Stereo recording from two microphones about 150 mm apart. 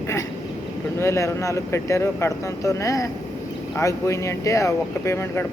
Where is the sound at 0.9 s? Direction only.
20° left (ahead or behind).